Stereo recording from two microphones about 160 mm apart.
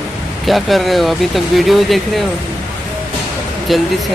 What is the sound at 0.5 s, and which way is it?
Speech, centre (ahead or behind).